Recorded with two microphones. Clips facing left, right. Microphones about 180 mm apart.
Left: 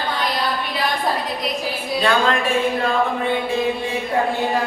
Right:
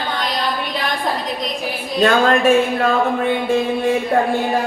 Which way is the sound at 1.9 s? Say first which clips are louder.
Right 5 dB; 45° right (ahead or behind).